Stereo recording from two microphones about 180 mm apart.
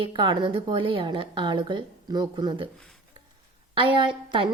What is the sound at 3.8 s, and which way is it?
Speech, 25° right (ahead or behind).